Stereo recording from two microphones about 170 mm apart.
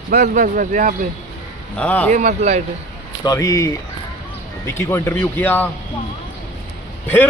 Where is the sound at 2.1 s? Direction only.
45° right (ahead or behind).